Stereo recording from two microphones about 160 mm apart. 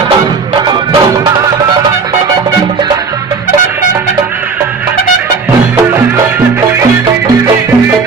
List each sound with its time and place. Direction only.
0.6 s music: 25° right (ahead or behind)